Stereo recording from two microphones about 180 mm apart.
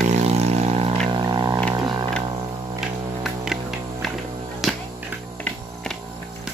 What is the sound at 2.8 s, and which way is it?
Music, centre (ahead or behind).